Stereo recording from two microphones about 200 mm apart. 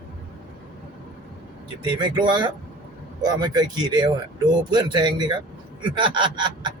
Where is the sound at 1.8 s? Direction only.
25° right (ahead or behind).